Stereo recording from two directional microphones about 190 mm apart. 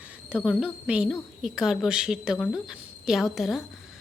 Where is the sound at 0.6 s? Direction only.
5° right (ahead or behind).